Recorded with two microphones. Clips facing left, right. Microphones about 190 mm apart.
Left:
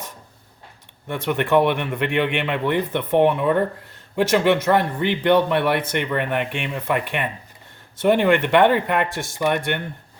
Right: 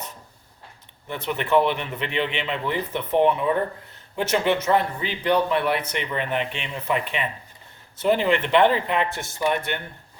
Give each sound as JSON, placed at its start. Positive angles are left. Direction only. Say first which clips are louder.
{"t": 1.0, "sound": "speech", "louder": "left 5 dB", "side_deg": 55}